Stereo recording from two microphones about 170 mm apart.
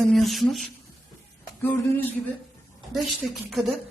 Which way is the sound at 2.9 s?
Centre (ahead or behind).